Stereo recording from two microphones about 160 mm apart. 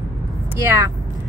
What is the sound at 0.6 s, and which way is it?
Speech, 20° right (ahead or behind).